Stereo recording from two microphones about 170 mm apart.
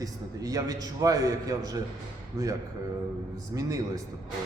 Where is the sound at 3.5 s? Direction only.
15° right (ahead or behind).